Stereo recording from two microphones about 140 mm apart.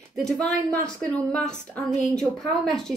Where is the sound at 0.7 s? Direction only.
20° right (ahead or behind).